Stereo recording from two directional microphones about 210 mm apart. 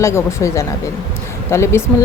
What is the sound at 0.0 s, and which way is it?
A woman's voice, 15° left (ahead or behind).